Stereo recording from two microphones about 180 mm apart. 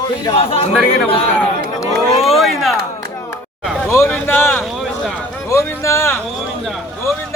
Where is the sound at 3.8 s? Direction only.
15° left (ahead or behind).